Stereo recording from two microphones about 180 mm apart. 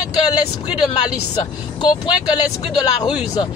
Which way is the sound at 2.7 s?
30° left (ahead or behind).